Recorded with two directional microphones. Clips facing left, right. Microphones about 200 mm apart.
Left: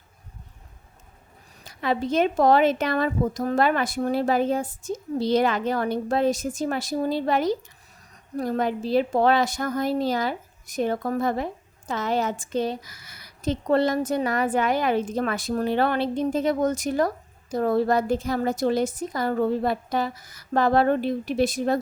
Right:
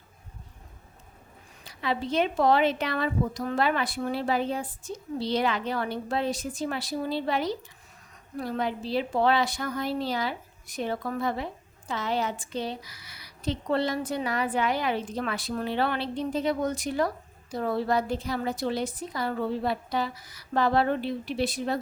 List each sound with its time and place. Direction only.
1.6 s a woman's voice: 45° left (ahead or behind)